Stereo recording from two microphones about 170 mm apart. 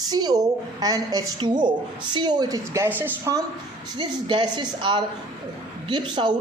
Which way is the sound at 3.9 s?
25° right (ahead or behind).